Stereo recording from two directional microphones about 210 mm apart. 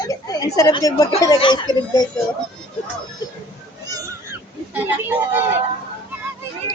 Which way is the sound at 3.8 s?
15° right (ahead or behind).